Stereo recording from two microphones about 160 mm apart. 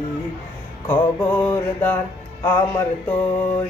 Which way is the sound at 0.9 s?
10° left (ahead or behind).